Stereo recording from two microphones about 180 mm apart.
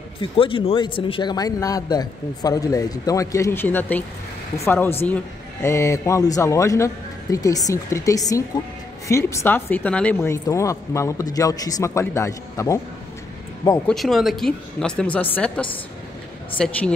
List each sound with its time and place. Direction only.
0.2 s a man's voice: 30° left (ahead or behind)
13.8 s speech: centre (ahead or behind)